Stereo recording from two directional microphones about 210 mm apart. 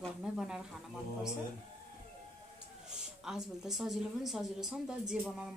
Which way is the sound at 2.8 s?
5° right (ahead or behind).